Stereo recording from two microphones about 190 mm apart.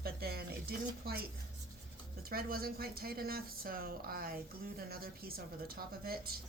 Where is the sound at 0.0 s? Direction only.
55° right (ahead or behind).